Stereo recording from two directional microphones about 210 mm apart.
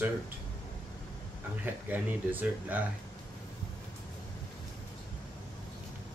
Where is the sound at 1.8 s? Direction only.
10° right (ahead or behind).